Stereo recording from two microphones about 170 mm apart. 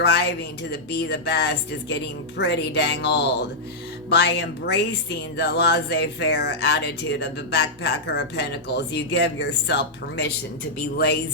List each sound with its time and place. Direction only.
0.0 s speech: 75° left (ahead or behind)
4.1 s speech: 90° left